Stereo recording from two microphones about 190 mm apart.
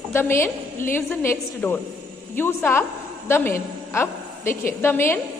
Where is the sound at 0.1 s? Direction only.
15° left (ahead or behind).